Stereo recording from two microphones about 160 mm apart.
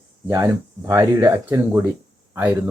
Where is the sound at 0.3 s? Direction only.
20° right (ahead or behind).